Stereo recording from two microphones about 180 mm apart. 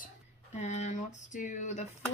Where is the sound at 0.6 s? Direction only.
40° left (ahead or behind).